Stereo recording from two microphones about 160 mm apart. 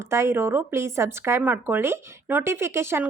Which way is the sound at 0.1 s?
15° right (ahead or behind).